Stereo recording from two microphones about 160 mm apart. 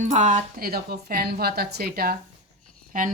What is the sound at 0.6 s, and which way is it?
Speech, 70° right (ahead or behind).